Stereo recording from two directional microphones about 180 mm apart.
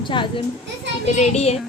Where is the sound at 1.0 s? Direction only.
40° left (ahead or behind).